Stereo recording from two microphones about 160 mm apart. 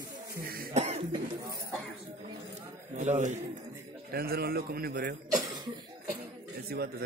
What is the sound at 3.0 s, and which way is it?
Speech, 50° right (ahead or behind).